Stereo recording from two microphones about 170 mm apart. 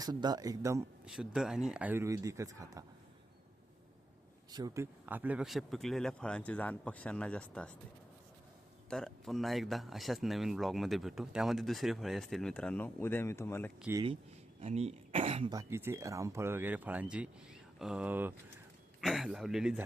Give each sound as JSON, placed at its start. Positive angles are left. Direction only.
{"t": 0.0, "sound": "speech", "side_deg": -25}
{"t": 1.0, "sound": "speech", "side_deg": -5}
{"t": 4.5, "sound": "speech", "side_deg": -20}
{"t": 8.9, "sound": "speech", "side_deg": 5}
{"t": 13.9, "sound": "speech", "side_deg": -10}
{"t": 14.6, "sound": "speech", "side_deg": -40}
{"t": 15.5, "sound": "speech", "side_deg": -15}